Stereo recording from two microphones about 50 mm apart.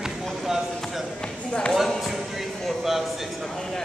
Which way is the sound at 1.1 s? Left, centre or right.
Centre.